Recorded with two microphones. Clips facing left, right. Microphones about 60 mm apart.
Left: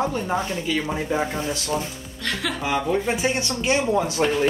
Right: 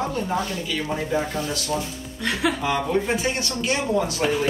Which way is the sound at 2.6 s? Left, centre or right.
Centre.